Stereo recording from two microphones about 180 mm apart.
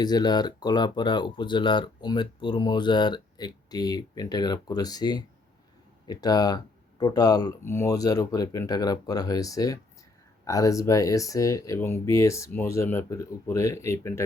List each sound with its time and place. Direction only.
0.0 s speech: 20° left (ahead or behind)